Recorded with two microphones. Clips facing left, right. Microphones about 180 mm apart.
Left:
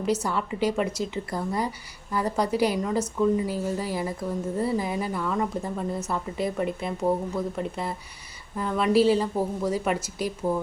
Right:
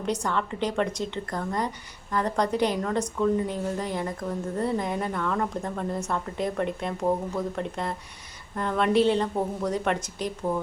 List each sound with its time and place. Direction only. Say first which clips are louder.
0.0 s speech: left 2 dB; 5° left (ahead or behind)